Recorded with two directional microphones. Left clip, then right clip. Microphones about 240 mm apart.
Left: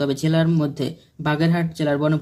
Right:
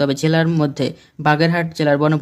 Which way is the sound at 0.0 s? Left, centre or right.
Right.